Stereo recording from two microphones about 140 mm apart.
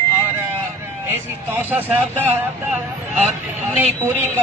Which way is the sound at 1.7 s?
15° right (ahead or behind).